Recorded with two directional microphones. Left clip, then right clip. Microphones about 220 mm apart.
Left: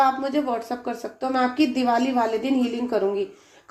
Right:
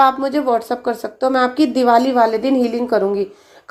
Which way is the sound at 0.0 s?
35° right (ahead or behind).